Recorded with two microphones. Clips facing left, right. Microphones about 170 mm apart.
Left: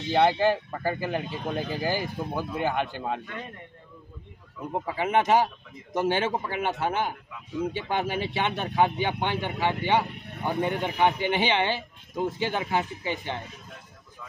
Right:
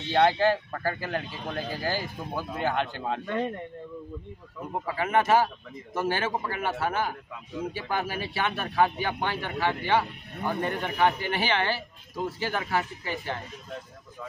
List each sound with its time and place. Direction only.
0.1 s speech: 15° left (ahead or behind)
4.7 s speech: 20° left (ahead or behind)